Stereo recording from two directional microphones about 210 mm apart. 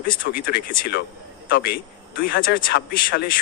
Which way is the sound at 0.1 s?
45° left (ahead or behind).